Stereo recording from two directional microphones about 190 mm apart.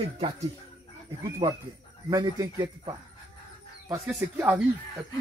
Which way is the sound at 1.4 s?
20° right (ahead or behind).